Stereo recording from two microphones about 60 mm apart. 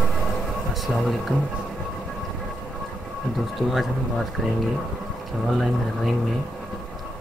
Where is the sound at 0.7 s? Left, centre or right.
Centre.